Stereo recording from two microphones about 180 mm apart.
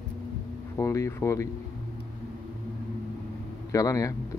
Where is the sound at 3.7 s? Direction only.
20° left (ahead or behind).